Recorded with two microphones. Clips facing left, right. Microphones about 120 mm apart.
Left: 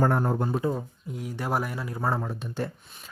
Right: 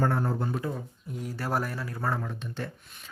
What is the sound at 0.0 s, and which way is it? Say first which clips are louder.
Speech: left 3 dB; 45° left (ahead or behind).